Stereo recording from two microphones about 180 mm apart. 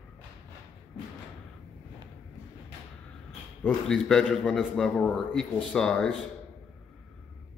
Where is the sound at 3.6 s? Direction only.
5° left (ahead or behind).